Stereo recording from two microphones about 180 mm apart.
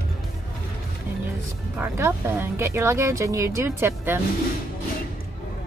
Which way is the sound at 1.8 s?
15° right (ahead or behind).